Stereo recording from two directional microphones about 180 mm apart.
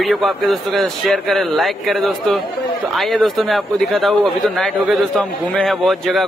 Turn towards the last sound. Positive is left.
turn(degrees=0)  # may be behind; listen again after turning